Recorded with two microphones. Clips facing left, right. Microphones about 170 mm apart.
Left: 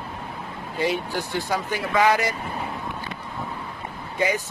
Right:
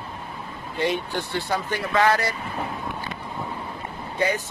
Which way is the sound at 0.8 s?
5° left (ahead or behind).